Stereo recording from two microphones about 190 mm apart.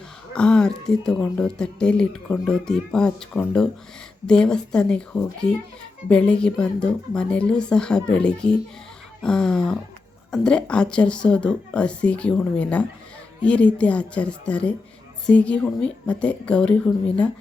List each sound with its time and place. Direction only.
0.3 s a woman's voice: 5° left (ahead or behind)